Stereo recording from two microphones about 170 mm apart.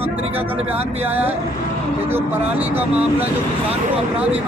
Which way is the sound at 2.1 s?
10° right (ahead or behind).